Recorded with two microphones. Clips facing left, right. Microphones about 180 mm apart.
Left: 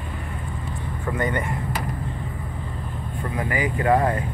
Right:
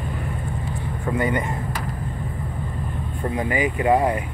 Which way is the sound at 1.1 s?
10° right (ahead or behind).